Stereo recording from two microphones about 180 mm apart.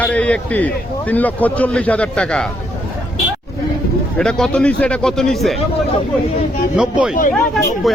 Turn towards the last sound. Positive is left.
turn(degrees=50)  # may be behind; listen again after turning